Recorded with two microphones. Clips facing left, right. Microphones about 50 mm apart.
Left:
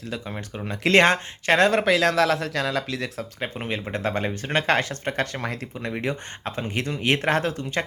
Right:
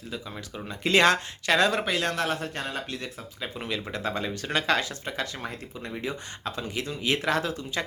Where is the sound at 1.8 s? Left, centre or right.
Left.